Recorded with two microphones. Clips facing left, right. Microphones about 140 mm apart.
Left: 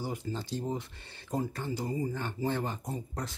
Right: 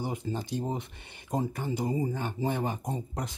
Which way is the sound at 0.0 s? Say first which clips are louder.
Right 3 dB; 20° right (ahead or behind).